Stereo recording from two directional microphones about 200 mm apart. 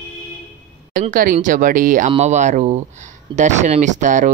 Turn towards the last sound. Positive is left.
turn(degrees=-40)  # may be behind; listen again after turning